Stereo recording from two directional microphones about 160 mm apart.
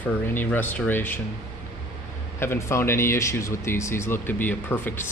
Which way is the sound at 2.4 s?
15° left (ahead or behind).